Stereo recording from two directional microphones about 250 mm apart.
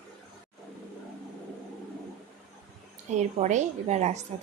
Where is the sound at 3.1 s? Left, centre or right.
Right.